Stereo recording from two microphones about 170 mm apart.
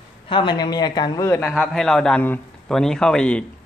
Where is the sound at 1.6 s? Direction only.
Centre (ahead or behind).